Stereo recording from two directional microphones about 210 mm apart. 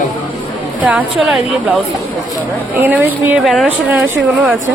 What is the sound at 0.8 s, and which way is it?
A woman's voice, 5° right (ahead or behind).